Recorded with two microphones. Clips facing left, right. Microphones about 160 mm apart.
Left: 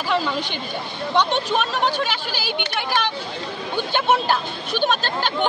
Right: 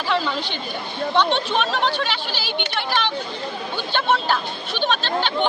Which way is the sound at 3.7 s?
10° left (ahead or behind).